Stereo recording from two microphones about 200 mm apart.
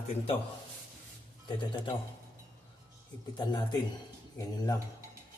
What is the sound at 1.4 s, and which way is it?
Speech, 25° left (ahead or behind).